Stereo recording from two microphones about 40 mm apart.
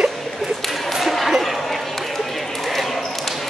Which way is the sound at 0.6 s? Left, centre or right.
Centre.